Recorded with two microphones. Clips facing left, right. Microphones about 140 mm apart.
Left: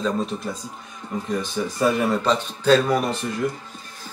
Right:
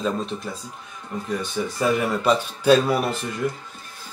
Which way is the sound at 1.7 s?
10° right (ahead or behind).